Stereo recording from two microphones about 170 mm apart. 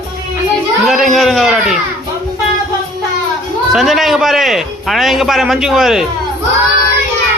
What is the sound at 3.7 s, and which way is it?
A man's voice, centre (ahead or behind).